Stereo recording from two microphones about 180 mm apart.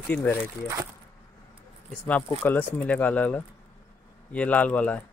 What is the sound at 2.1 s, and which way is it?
Speech, 10° left (ahead or behind).